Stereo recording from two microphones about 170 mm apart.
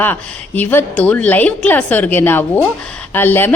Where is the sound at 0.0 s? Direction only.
10° left (ahead or behind).